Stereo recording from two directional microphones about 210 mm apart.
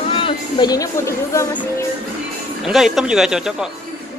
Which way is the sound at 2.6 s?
Centre (ahead or behind).